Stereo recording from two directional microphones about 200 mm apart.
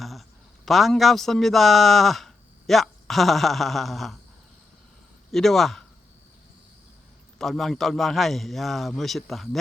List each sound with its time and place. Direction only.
0.0 s a man's voice: centre (ahead or behind)
5.3 s a man's voice: centre (ahead or behind)
7.3 s a man's voice: centre (ahead or behind)